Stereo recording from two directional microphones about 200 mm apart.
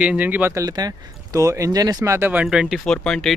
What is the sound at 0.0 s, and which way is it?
Speech, 5° right (ahead or behind).